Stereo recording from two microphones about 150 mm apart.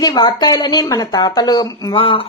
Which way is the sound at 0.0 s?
30° left (ahead or behind).